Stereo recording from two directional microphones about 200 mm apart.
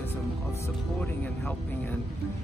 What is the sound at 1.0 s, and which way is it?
Speech, 5° left (ahead or behind).